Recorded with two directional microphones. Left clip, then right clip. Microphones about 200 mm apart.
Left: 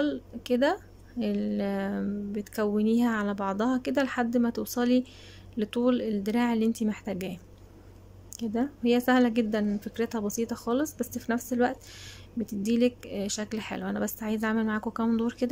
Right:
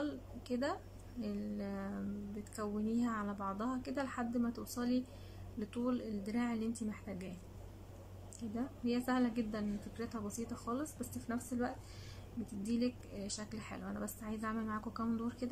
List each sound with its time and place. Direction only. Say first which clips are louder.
0.0 s a woman's voice: left 13 dB; 45° left (ahead or behind)
8.4 s a woman's voice: left 13 dB; 45° left (ahead or behind)